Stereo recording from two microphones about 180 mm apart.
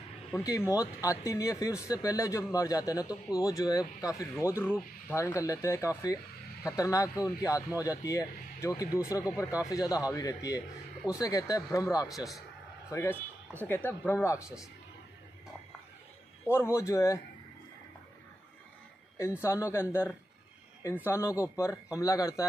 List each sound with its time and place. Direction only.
0.3 s a man's voice: 15° left (ahead or behind)
16.4 s a man's voice: 15° left (ahead or behind)
19.4 s a man's voice: 15° left (ahead or behind)